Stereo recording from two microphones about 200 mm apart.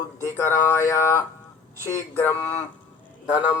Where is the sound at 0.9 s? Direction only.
15° left (ahead or behind).